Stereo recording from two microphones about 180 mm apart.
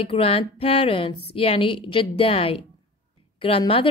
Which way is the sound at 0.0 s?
30° left (ahead or behind).